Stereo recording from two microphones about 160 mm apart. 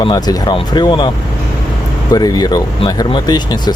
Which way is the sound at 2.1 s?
25° left (ahead or behind).